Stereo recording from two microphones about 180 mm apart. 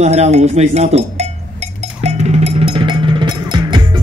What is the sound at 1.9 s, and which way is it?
Music, 35° right (ahead or behind).